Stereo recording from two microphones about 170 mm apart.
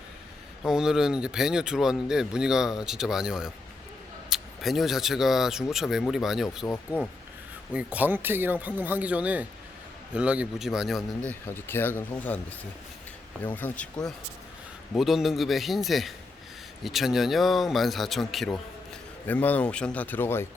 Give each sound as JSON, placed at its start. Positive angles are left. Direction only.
{"t": 0.6, "sound": "speech", "side_deg": -5}
{"t": 7.7, "sound": "speech", "side_deg": -10}
{"t": 11.3, "sound": "speech", "side_deg": 10}
{"t": 14.9, "sound": "speech", "side_deg": 0}